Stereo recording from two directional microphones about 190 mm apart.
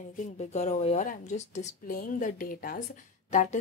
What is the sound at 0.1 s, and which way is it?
Speech, 40° left (ahead or behind).